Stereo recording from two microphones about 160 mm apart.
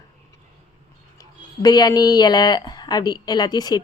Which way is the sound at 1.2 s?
25° left (ahead or behind).